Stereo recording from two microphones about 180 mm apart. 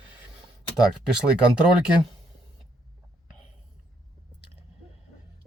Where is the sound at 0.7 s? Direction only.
5° right (ahead or behind).